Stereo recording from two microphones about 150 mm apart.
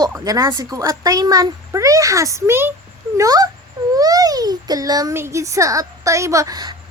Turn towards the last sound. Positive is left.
turn(degrees=-25)  # may be behind; listen again after turning